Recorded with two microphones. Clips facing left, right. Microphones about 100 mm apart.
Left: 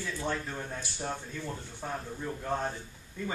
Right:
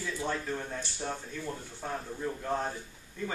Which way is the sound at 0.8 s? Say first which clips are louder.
Even; 10° left (ahead or behind).